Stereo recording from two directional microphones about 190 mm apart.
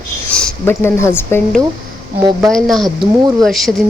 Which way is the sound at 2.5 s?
Centre (ahead or behind).